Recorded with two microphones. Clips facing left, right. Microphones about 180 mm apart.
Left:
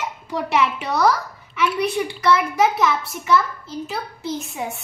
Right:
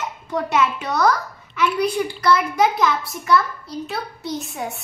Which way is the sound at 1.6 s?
Centre (ahead or behind).